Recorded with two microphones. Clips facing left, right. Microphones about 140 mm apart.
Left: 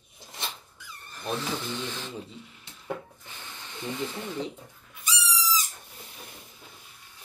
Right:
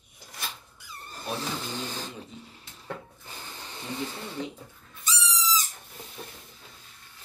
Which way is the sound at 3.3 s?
35° right (ahead or behind).